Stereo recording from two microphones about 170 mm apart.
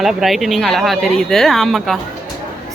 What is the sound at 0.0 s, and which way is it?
Speech, centre (ahead or behind).